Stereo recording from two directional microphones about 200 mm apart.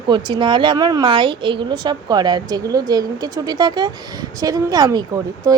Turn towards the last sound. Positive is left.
turn(degrees=-20)  # may be behind; listen again after turning